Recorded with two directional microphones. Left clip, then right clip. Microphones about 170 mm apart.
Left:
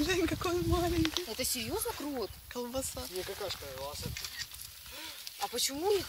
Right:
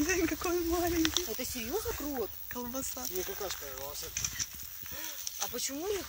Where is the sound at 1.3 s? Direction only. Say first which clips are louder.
Left 3 dB; 50° left (ahead or behind).